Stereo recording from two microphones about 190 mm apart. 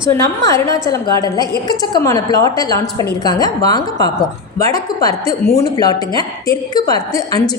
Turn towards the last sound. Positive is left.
turn(degrees=20)  # may be behind; listen again after turning